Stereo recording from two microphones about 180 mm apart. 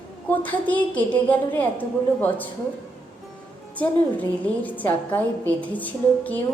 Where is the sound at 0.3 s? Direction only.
10° left (ahead or behind).